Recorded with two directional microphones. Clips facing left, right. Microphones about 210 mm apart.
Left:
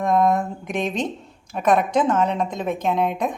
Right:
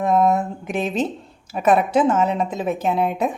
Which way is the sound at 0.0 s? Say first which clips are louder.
Right 1 dB; 5° right (ahead or behind).